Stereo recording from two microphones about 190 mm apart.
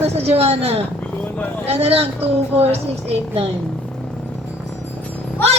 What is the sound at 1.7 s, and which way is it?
A woman's voice, 30° right (ahead or behind).